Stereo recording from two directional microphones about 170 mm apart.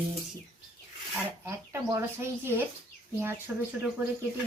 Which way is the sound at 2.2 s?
15° right (ahead or behind).